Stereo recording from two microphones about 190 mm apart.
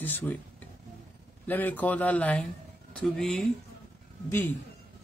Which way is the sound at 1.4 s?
10° left (ahead or behind).